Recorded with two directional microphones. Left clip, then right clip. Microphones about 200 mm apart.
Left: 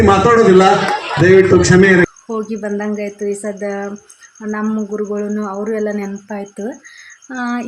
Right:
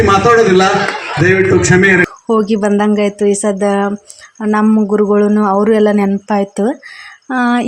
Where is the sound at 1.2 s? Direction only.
40° right (ahead or behind).